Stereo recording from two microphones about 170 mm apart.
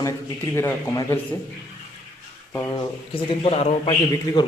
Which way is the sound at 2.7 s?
30° left (ahead or behind).